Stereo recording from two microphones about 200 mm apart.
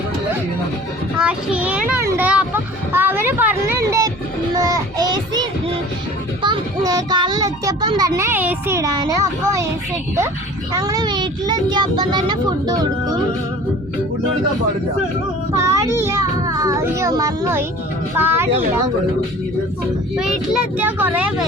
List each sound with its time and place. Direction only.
1.2 s child singing: 5° right (ahead or behind)
2.0 s a sound: 10° right (ahead or behind)
4.5 s child singing: 20° right (ahead or behind)
6.4 s a child's voice: 20° right (ahead or behind)
10.7 s a child's voice: 15° right (ahead or behind)
15.5 s a child's voice: 15° right (ahead or behind)
20.1 s a child's voice: 5° right (ahead or behind)